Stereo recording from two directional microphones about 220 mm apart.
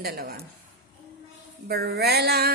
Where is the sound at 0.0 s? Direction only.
45° right (ahead or behind).